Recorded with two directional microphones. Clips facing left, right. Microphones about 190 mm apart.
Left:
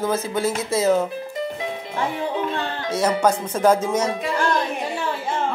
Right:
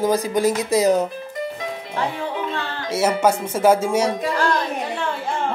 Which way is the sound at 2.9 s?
10° right (ahead or behind).